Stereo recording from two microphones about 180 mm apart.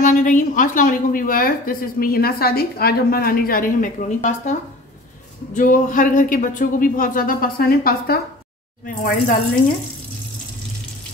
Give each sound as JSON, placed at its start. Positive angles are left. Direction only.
{"t": 0.0, "sound": "a woman's voice", "side_deg": 45}